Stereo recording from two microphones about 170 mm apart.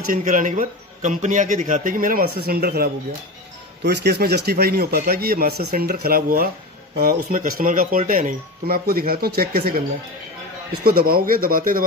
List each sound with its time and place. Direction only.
0.1 s a man's voice: 50° right (ahead or behind)
3.8 s speech: 75° right (ahead or behind); by 11.8 s 55° right (ahead or behind)